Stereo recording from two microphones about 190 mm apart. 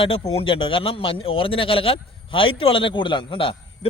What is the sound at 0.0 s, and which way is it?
A man's voice, 30° left (ahead or behind).